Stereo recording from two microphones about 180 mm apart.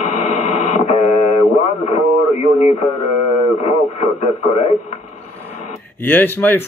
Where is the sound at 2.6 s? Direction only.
35° left (ahead or behind).